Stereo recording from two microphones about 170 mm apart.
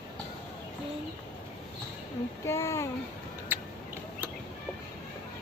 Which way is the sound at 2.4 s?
15° left (ahead or behind).